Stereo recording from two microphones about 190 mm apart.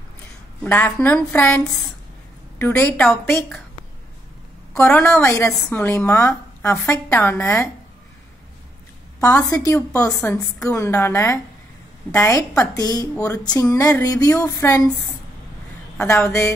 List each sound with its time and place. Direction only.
0.7 s a woman's voice: 10° left (ahead or behind)
4.7 s a woman's voice: 10° left (ahead or behind)
9.2 s a woman's voice: 15° left (ahead or behind)
13.2 s a sound: 20° left (ahead or behind)
16.0 s a woman's voice: 15° left (ahead or behind)